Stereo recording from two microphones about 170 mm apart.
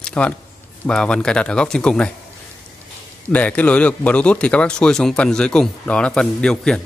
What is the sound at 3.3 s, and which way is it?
Speech, 10° left (ahead or behind).